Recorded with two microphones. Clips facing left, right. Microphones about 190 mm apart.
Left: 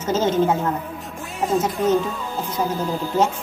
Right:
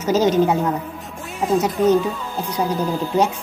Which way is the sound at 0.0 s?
15° right (ahead or behind).